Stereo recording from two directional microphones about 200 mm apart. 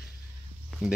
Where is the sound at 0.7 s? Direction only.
Centre (ahead or behind).